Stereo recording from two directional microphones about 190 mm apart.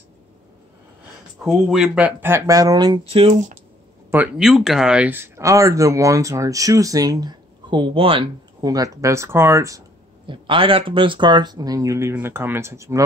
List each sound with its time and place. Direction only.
1.4 s speech: centre (ahead or behind); by 3.5 s 35° right (ahead or behind)
4.1 s speech: 10° right (ahead or behind)